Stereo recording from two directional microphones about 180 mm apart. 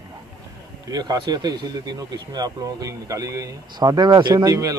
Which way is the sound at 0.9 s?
20° right (ahead or behind).